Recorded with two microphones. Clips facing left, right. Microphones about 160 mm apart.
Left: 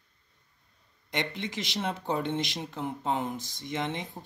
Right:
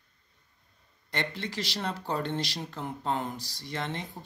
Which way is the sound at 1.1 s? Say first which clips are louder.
Left 1 dB; 15° left (ahead or behind).